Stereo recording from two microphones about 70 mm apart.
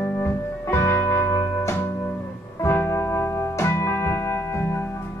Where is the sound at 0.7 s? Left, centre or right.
Left.